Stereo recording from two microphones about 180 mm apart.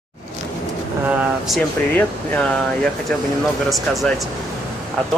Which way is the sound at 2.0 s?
5° left (ahead or behind).